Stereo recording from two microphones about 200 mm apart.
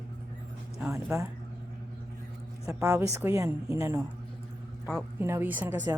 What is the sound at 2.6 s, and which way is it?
Speech, 15° right (ahead or behind).